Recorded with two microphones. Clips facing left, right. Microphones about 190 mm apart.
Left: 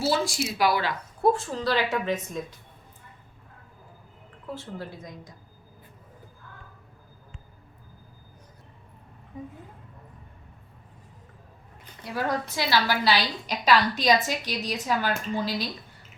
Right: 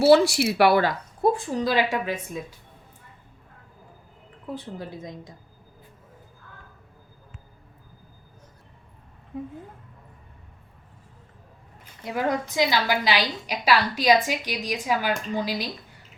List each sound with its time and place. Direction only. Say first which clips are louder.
0.0 s speech: right 9 dB; 65° right (ahead or behind)
1.3 s a woman's voice: even; 15° right (ahead or behind)
4.5 s a woman's voice: right 2 dB; 20° right (ahead or behind)
12.0 s a woman's voice: right 3 dB; 15° right (ahead or behind)